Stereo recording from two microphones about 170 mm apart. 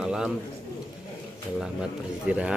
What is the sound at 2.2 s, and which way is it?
Speech, 5° right (ahead or behind).